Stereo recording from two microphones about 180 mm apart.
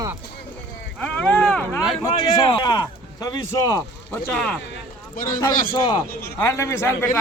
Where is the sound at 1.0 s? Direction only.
5° left (ahead or behind).